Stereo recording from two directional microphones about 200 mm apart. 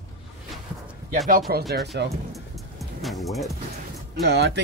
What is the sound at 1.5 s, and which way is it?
Speech, 50° right (ahead or behind).